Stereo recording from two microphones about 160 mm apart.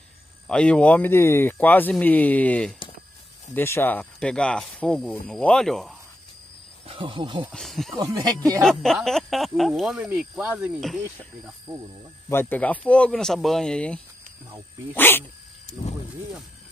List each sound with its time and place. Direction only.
0.5 s speech: 5° left (ahead or behind)
6.9 s speech: 30° right (ahead or behind)
7.5 s speech: centre (ahead or behind)
8.0 s speech: 25° right (ahead or behind)
8.6 s speech: centre (ahead or behind)
12.3 s speech: 15° left (ahead or behind)